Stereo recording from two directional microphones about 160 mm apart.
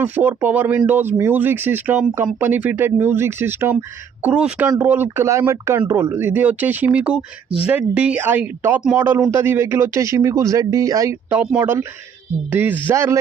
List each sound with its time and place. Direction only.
0.0 s speech: 10° right (ahead or behind)